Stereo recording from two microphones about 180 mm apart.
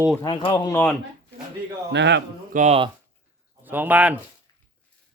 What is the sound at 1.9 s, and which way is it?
Speech, 75° right (ahead or behind).